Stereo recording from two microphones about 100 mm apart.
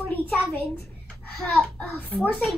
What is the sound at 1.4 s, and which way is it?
Speech, 10° left (ahead or behind).